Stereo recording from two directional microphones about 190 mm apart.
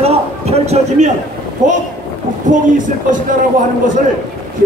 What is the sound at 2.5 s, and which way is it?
Speech, 45° right (ahead or behind).